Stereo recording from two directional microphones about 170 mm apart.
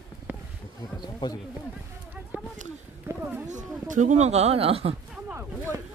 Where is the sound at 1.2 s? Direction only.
25° left (ahead or behind).